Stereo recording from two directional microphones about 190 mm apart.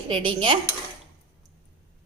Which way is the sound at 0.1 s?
25° right (ahead or behind).